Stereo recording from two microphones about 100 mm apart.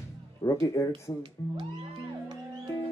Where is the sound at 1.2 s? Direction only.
55° right (ahead or behind).